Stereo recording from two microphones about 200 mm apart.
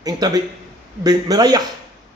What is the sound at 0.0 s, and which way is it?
A man's voice, 20° right (ahead or behind).